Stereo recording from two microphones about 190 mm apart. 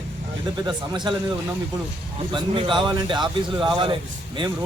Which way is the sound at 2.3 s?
25° right (ahead or behind).